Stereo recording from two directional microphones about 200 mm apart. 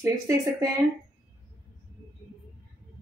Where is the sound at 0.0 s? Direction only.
15° right (ahead or behind).